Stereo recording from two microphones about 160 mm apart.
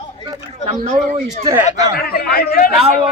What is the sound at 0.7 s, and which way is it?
Speech, 55° right (ahead or behind).